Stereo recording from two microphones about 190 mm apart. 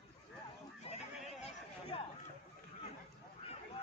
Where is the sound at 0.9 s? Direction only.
30° left (ahead or behind).